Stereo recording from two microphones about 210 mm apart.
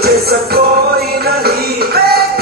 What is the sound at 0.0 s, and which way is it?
Music, 50° right (ahead or behind).